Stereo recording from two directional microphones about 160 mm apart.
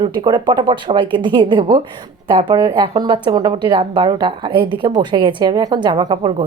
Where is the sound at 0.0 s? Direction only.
30° right (ahead or behind).